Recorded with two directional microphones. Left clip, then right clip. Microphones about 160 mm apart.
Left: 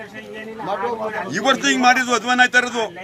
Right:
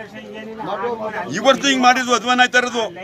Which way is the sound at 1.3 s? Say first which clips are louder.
Right 3 dB; 10° right (ahead or behind).